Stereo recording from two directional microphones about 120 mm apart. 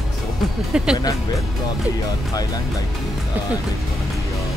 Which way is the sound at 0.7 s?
5° right (ahead or behind).